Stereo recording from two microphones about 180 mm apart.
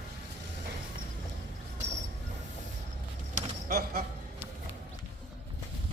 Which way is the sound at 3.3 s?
50° right (ahead or behind).